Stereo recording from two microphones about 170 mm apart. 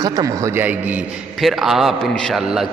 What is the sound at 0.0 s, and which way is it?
A man's voice, 20° right (ahead or behind).